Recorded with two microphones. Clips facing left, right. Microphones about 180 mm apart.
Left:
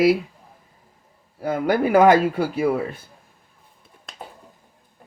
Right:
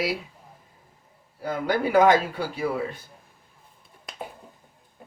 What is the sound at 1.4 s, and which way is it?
Speech, 55° left (ahead or behind).